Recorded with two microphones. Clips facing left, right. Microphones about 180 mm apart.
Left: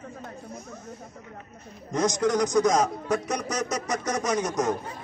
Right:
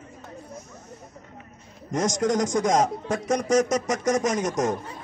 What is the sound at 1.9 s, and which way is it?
A man's voice, 45° right (ahead or behind).